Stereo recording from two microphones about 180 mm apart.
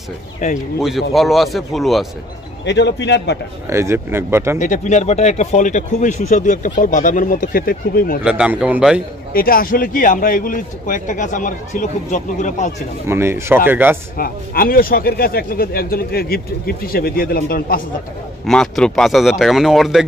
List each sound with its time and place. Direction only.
0.4 s speech: 40° left (ahead or behind)
0.7 s a man's voice: centre (ahead or behind)
2.6 s a man's voice: 75° left (ahead or behind)
3.7 s speech: 15° right (ahead or behind)
4.6 s speech: 40° left (ahead or behind)
8.2 s a man's voice: 5° right (ahead or behind)
9.3 s speech: 55° left (ahead or behind)
13.1 s speech: 15° right (ahead or behind)
14.1 s speech: 55° left (ahead or behind)
18.4 s a man's voice: 5° left (ahead or behind)